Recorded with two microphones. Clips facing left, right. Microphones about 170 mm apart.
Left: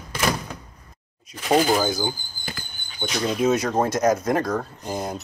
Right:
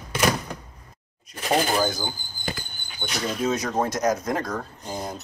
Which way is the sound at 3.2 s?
5° left (ahead or behind).